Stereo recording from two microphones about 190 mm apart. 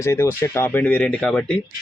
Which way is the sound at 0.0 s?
15° left (ahead or behind).